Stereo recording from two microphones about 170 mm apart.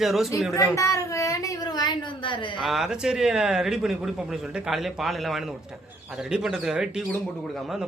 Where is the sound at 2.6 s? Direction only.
Centre (ahead or behind).